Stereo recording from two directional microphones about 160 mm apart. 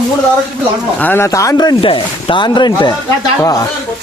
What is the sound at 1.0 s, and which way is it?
Speech, 15° left (ahead or behind).